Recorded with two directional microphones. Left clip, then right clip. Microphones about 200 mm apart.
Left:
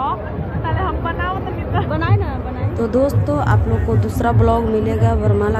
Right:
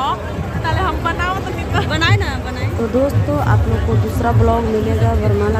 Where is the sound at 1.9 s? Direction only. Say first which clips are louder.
Right 4 dB; centre (ahead or behind).